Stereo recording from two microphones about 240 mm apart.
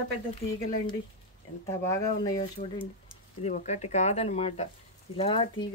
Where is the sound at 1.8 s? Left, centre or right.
Centre.